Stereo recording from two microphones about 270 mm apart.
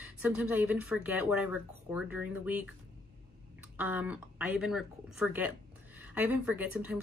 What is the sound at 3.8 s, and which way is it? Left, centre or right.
A woman's voice, centre.